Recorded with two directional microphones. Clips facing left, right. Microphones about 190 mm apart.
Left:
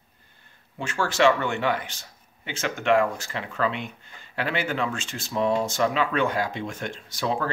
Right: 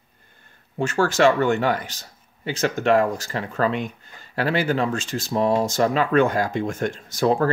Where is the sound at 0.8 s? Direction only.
45° right (ahead or behind).